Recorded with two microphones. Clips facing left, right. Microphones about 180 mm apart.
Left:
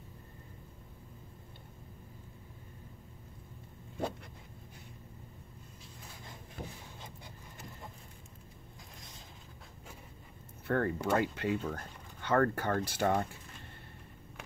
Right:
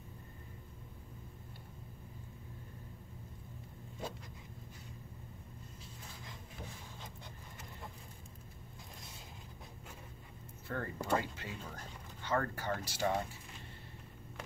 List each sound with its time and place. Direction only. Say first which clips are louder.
10.7 s speech: left 6 dB; 65° left (ahead or behind)